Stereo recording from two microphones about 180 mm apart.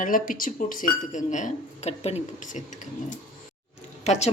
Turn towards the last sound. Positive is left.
turn(degrees=35)  # may be behind; listen again after turning